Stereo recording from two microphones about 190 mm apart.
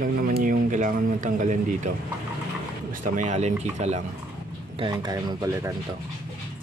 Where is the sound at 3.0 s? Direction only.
40° right (ahead or behind).